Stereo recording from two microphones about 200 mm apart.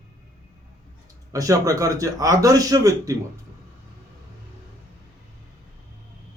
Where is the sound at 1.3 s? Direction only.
15° right (ahead or behind).